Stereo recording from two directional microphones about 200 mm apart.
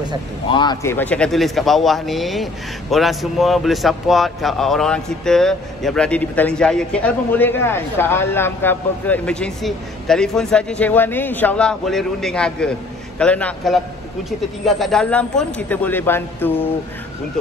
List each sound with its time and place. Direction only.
0.5 s speech: 20° left (ahead or behind)
0.9 s speech: 5° left (ahead or behind)